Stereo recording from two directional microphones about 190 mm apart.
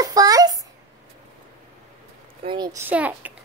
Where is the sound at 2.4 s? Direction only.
20° right (ahead or behind).